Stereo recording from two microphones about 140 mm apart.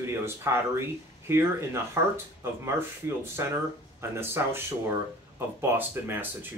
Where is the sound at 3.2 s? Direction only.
20° right (ahead or behind).